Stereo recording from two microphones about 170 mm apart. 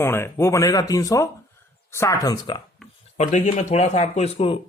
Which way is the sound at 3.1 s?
45° left (ahead or behind).